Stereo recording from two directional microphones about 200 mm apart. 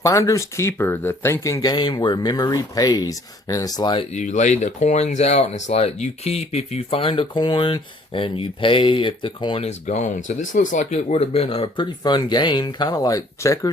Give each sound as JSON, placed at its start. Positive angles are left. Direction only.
{"t": 0.0, "sound": "speech", "side_deg": 15}
{"t": 4.1, "sound": "speech", "side_deg": 35}